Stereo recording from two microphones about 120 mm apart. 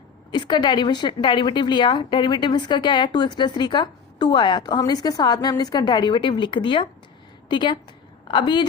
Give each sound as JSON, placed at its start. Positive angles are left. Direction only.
{"t": 0.3, "sound": "speech", "side_deg": 40}